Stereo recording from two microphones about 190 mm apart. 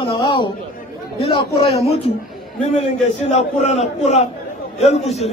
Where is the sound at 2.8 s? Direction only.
40° left (ahead or behind).